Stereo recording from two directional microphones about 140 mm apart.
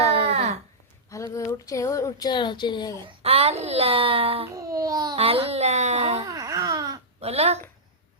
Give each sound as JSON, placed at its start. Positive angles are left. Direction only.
{"t": 0.1, "sound": "a sound", "side_deg": -45}
{"t": 1.1, "sound": "speech", "side_deg": 20}
{"t": 3.1, "sound": "a child's voice", "side_deg": -45}
{"t": 4.4, "sound": "babbling", "side_deg": -25}
{"t": 5.1, "sound": "a child's voice", "side_deg": -45}
{"t": 6.2, "sound": "babbling", "side_deg": -25}
{"t": 7.2, "sound": "speech", "side_deg": -45}